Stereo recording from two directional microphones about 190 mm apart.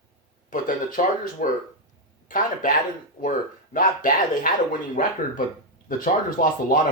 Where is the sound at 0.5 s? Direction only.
45° left (ahead or behind).